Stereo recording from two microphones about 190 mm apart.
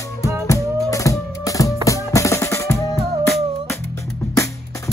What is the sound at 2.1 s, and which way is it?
Drum, 15° left (ahead or behind).